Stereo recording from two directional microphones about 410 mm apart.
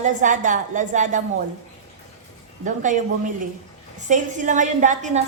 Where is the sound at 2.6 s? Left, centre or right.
Centre.